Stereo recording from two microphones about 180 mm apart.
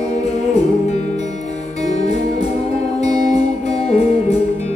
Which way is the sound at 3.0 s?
35° left (ahead or behind).